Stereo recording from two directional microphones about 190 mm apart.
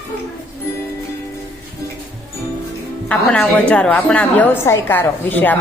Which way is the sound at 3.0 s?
5° left (ahead or behind).